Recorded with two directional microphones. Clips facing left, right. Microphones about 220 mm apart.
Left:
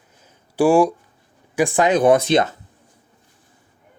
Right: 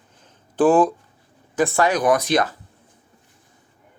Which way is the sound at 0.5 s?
10° left (ahead or behind).